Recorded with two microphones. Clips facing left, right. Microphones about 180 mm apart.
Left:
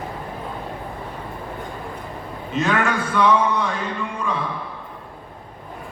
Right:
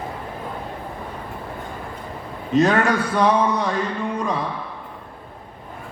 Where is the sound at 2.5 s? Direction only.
35° right (ahead or behind).